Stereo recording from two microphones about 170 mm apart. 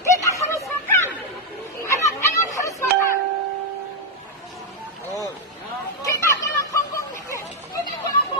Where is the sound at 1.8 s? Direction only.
20° left (ahead or behind).